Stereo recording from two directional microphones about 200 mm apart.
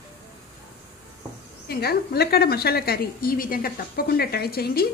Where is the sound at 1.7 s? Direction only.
50° left (ahead or behind).